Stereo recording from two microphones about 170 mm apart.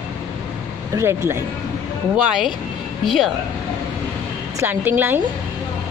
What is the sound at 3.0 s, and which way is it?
Speech, centre (ahead or behind).